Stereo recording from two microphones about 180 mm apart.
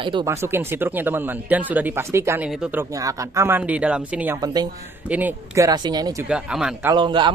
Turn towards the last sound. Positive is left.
turn(degrees=-25)  # may be behind; listen again after turning